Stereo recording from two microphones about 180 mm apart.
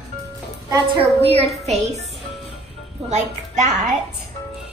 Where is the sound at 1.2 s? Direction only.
35° right (ahead or behind).